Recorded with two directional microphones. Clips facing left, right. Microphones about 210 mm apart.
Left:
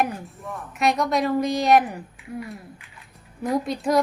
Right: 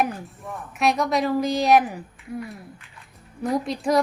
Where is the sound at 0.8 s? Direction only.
Centre (ahead or behind).